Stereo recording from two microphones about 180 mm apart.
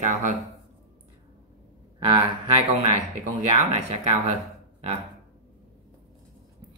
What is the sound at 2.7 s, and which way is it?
Speech, 40° right (ahead or behind).